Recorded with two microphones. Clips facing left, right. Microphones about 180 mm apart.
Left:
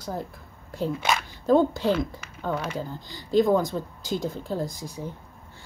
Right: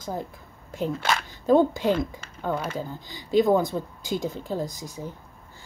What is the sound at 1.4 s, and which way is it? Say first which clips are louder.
Speech: right 1 dB; 5° right (ahead or behind).